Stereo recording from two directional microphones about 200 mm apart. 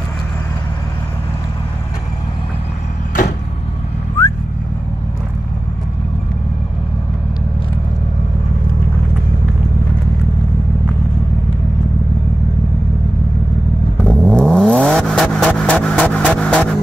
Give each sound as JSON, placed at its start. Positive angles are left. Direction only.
{"t": 14.0, "sound": "vehicle", "side_deg": 5}